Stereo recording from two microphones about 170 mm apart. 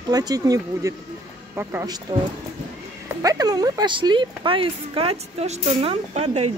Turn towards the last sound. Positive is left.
turn(degrees=-40)  # may be behind; listen again after turning